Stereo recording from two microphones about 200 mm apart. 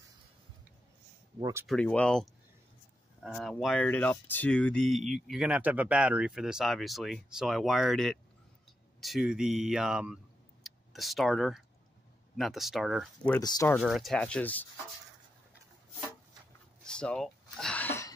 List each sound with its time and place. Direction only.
1.4 s speech: 10° right (ahead or behind)
1.7 s speech: 5° left (ahead or behind)
13.4 s speech: 20° left (ahead or behind)
13.7 s speech: centre (ahead or behind)
16.8 s a sound: 5° left (ahead or behind)